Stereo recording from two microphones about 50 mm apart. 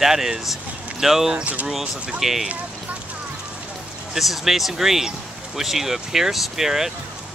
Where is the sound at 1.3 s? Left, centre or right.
Right.